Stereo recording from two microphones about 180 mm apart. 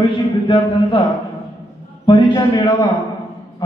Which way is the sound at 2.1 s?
25° left (ahead or behind).